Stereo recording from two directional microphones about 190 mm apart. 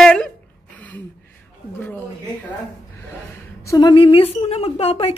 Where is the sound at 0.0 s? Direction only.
5° left (ahead or behind).